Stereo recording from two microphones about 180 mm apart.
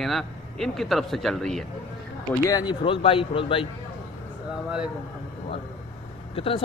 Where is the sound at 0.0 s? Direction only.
Centre (ahead or behind).